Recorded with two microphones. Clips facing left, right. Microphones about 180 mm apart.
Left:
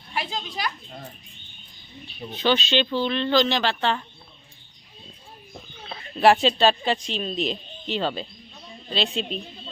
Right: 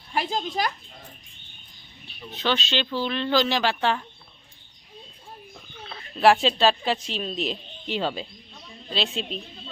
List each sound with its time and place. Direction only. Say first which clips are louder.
0.1 s a child's voice: right 4 dB; 45° right (ahead or behind)
2.3 s speech: left 4 dB; centre (ahead or behind)
6.2 s speech: left 1 dB; centre (ahead or behind)